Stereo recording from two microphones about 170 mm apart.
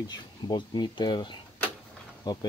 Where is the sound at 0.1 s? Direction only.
25° left (ahead or behind).